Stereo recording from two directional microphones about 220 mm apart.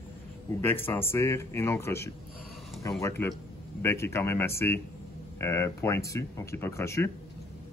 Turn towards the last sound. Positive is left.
turn(degrees=10)  # may be behind; listen again after turning